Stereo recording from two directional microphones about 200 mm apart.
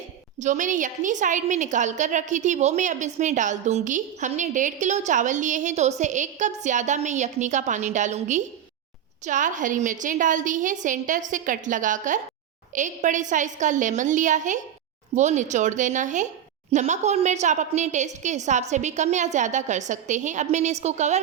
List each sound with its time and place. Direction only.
0.3 s a woman's voice: 40° right (ahead or behind)